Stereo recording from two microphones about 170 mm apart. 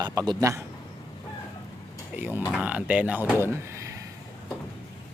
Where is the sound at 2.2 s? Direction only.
10° right (ahead or behind).